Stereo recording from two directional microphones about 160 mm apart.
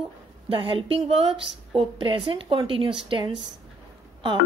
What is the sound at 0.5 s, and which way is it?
Speech, 35° right (ahead or behind).